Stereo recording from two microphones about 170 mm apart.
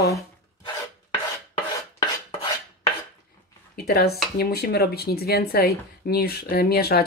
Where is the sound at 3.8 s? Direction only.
65° left (ahead or behind).